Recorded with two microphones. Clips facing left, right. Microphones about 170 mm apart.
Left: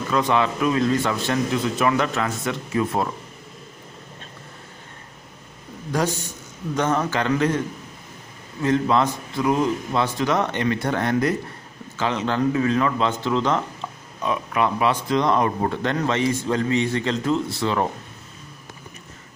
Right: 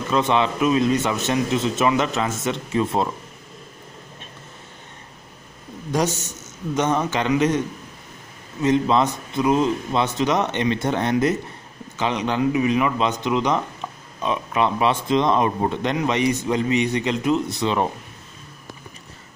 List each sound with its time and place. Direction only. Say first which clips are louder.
0.1 s a man's voice: right 1 dB; 20° right (ahead or behind)
5.9 s a man's voice: right 1 dB; 20° right (ahead or behind)